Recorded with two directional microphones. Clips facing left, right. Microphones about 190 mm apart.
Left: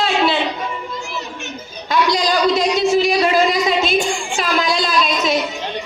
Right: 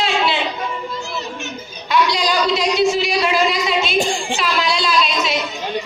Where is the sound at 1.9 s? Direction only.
50° left (ahead or behind).